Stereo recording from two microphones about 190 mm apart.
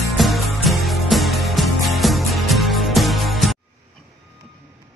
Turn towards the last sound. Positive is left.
turn(degrees=0)  # may be behind; listen again after turning